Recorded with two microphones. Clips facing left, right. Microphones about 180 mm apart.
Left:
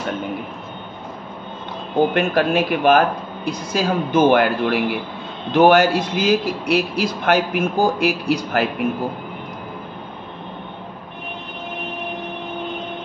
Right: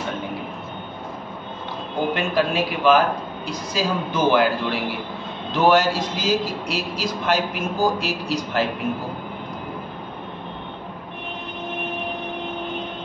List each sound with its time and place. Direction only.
2.1 s a man's voice: 55° left (ahead or behind)